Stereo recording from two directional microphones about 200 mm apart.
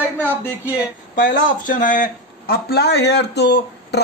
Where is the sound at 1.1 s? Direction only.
40° left (ahead or behind).